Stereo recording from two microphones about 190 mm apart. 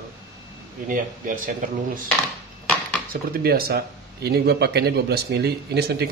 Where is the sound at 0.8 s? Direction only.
45° right (ahead or behind).